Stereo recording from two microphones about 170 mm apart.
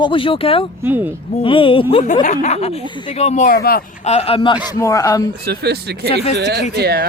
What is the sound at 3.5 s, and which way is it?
Speech, 65° left (ahead or behind).